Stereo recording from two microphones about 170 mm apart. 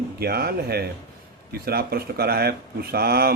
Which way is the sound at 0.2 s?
65° right (ahead or behind).